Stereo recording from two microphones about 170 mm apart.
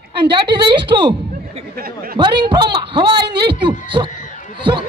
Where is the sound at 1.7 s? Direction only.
60° right (ahead or behind).